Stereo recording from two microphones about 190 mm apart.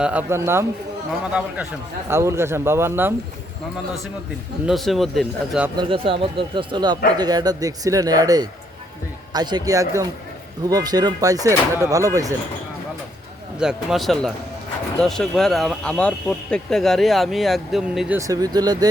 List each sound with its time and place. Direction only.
0.0 s speech: 10° right (ahead or behind)
4.6 s speech: centre (ahead or behind)
5.7 s speech: 25° right (ahead or behind)
13.6 s speech: centre (ahead or behind)
18.2 s speech: 20° right (ahead or behind)